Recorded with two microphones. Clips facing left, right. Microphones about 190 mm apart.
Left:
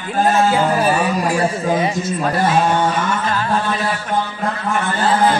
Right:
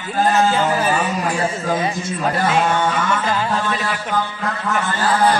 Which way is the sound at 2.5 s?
25° left (ahead or behind).